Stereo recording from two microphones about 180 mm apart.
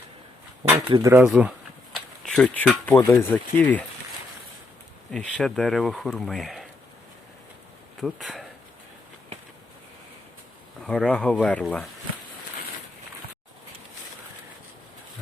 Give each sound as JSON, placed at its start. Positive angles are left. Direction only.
{"t": 0.9, "sound": "speech", "side_deg": -25}
{"t": 1.1, "sound": "speech", "side_deg": -5}
{"t": 5.1, "sound": "speech", "side_deg": 5}
{"t": 8.0, "sound": "speech", "side_deg": 0}
{"t": 10.8, "sound": "speech", "side_deg": 5}